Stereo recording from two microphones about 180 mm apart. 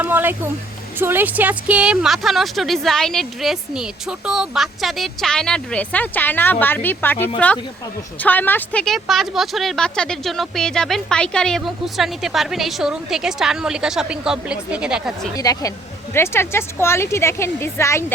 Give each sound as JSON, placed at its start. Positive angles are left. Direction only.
{"t": 0.0, "sound": "speech", "side_deg": -10}
{"t": 15.4, "sound": "speech", "side_deg": 20}